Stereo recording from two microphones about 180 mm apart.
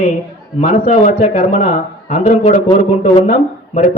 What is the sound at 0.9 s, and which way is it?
A man's voice, 40° left (ahead or behind).